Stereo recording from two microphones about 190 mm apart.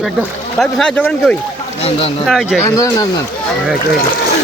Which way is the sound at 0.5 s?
Centre (ahead or behind).